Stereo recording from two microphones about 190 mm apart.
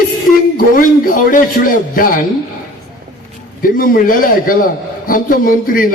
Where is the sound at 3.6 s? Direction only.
50° left (ahead or behind).